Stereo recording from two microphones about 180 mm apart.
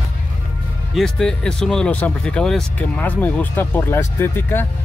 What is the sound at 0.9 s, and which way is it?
Speech, 5° left (ahead or behind).